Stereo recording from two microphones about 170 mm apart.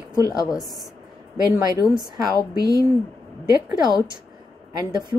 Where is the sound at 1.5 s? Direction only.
20° right (ahead or behind).